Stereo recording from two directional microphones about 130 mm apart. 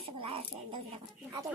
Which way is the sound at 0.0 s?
45° right (ahead or behind).